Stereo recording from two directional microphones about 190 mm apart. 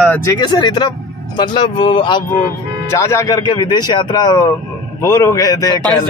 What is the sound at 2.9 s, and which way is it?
Speech, 15° left (ahead or behind).